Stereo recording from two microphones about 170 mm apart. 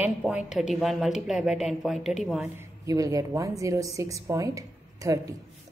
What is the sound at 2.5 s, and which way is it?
A woman's voice, 20° right (ahead or behind).